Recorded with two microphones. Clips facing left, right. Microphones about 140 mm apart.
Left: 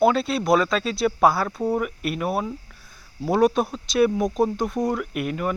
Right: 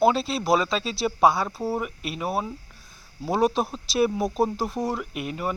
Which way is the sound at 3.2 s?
Centre (ahead or behind).